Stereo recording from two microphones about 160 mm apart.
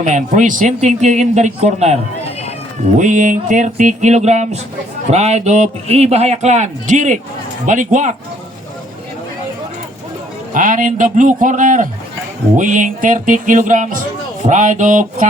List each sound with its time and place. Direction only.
0.0 s speech: 50° right (ahead or behind)
3.0 s speech: 50° right (ahead or behind)
10.5 s speech: 55° right (ahead or behind)